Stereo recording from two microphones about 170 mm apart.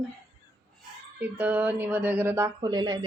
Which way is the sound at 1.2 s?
10° right (ahead or behind).